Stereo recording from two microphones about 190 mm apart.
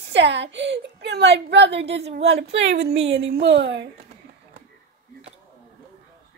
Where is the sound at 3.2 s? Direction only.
65° right (ahead or behind).